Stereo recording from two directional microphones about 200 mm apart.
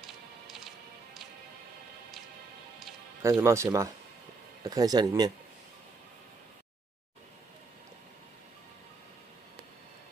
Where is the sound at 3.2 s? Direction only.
15° right (ahead or behind).